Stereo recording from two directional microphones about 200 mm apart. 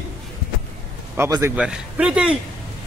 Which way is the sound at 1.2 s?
10° right (ahead or behind).